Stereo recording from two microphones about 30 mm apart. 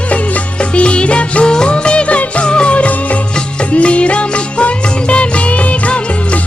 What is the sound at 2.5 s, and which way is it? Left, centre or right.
Music, left.